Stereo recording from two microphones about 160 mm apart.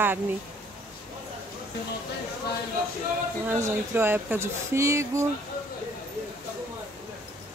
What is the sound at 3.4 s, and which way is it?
Speech, 15° right (ahead or behind).